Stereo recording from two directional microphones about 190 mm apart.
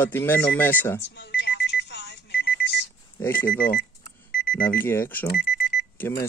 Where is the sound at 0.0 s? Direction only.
10° left (ahead or behind).